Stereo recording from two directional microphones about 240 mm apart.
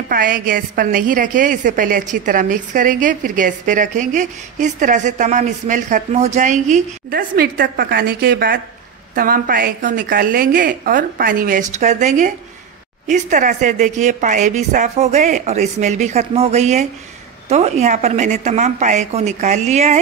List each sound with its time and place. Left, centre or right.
0.1 s a woman's voice: right